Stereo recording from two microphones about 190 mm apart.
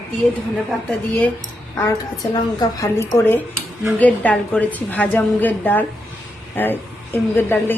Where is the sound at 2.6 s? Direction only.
15° left (ahead or behind).